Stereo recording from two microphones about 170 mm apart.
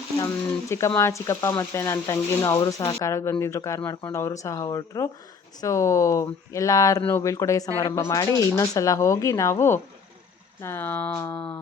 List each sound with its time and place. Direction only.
0.7 s speech: 15° left (ahead or behind)